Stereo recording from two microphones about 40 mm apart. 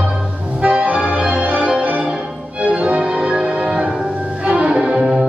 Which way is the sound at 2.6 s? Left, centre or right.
Right.